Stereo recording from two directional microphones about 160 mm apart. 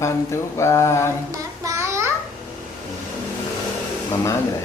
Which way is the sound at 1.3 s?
20° right (ahead or behind).